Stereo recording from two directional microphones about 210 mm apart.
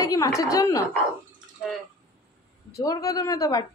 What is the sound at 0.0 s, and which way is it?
Speech, 15° left (ahead or behind).